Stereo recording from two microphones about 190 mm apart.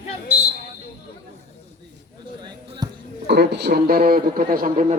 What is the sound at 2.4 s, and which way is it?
Speech, 25° right (ahead or behind).